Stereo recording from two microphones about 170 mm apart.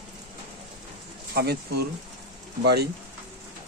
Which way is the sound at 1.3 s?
70° right (ahead or behind).